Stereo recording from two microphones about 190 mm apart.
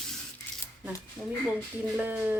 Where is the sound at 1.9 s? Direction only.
5° right (ahead or behind).